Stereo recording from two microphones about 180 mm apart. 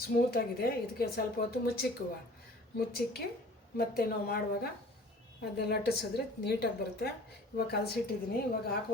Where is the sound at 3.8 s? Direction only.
55° left (ahead or behind).